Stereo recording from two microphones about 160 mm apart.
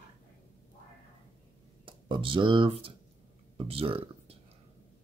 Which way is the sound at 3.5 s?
35° right (ahead or behind).